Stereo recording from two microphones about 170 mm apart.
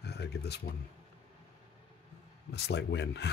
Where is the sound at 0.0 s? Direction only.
75° left (ahead or behind).